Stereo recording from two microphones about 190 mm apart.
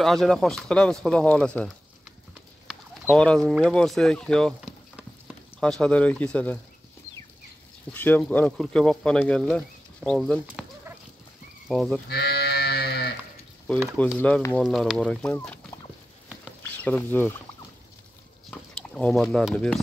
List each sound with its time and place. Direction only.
0.0 s speech: centre (ahead or behind)
3.1 s speech: 5° left (ahead or behind)
7.9 s speech: 10° left (ahead or behind)
11.6 s livestock: centre (ahead or behind)
12.1 s livestock: 55° left (ahead or behind)
13.7 s speech: 10° left (ahead or behind)
16.8 s speech: 10° left (ahead or behind)
18.5 s speech: 5° left (ahead or behind)